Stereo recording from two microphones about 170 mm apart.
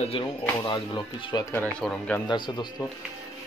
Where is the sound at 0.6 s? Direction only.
25° left (ahead or behind).